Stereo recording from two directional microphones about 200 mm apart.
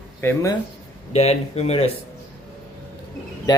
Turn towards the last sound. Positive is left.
turn(degrees=20)  # may be behind; listen again after turning